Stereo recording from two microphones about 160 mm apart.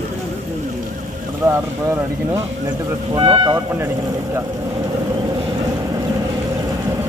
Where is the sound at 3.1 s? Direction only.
30° right (ahead or behind).